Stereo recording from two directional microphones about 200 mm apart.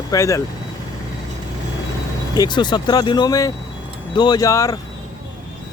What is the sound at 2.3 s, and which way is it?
Speech, 20° left (ahead or behind).